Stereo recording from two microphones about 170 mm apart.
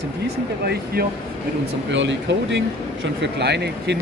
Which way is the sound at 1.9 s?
90° right.